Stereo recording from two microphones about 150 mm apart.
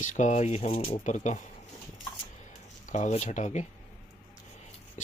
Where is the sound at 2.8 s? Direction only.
55° left (ahead or behind).